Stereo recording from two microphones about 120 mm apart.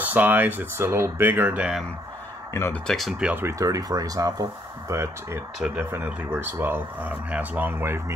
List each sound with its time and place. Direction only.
0.0 s speech: 15° right (ahead or behind)
2.5 s speech: 20° left (ahead or behind)
2.9 s speech: centre (ahead or behind)
3.4 s speech: 25° right (ahead or behind)